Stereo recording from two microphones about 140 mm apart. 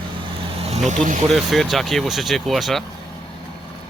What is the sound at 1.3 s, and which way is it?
Speech, centre (ahead or behind).